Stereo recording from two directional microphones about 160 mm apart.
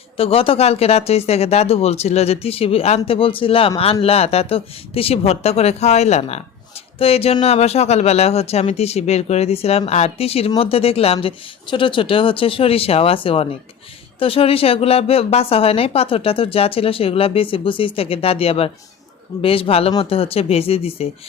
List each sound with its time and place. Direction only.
0.2 s a woman's voice: 35° left (ahead or behind)